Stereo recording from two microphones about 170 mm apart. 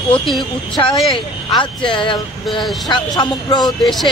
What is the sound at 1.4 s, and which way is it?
Speech, 30° left (ahead or behind).